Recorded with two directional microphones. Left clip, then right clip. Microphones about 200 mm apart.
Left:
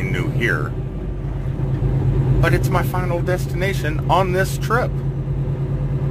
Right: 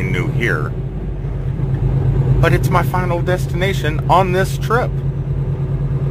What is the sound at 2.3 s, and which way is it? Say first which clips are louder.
Speech: right 4 dB; 15° right (ahead or behind).